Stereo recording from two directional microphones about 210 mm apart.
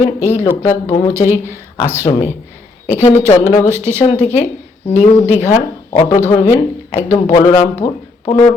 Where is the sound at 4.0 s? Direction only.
30° left (ahead or behind).